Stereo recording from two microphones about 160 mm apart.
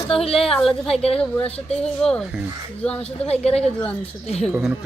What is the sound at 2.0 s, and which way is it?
A woman's voice, 5° left (ahead or behind).